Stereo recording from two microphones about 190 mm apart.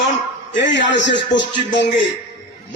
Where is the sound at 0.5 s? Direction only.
70° left (ahead or behind).